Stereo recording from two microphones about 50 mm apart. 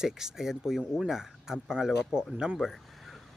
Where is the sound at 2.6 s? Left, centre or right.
Centre.